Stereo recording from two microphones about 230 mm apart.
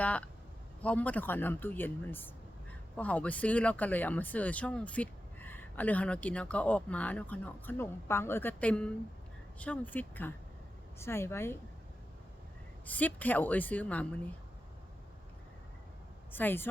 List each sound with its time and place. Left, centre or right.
0.0 s speech: centre
12.8 s speech: centre
16.3 s speech: centre